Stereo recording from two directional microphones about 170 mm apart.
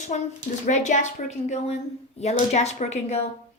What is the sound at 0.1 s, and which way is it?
A woman's voice, 45° left (ahead or behind).